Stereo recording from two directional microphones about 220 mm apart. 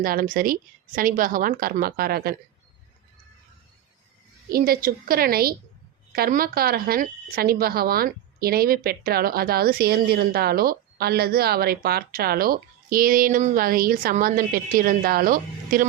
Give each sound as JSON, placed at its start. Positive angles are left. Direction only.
{"t": 0.0, "sound": "a woman's voice", "side_deg": -40}
{"t": 4.5, "sound": "a woman's voice", "side_deg": -40}